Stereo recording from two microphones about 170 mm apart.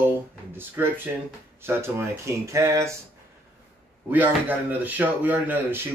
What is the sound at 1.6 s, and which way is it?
Speech, 15° right (ahead or behind).